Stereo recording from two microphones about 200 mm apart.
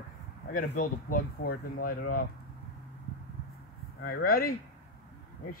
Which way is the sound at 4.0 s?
50° left (ahead or behind).